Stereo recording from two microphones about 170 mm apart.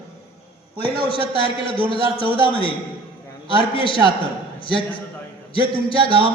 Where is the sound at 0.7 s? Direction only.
35° left (ahead or behind).